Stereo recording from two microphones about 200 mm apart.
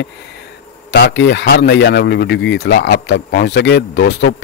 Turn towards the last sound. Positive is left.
turn(degrees=60)  # may be behind; listen again after turning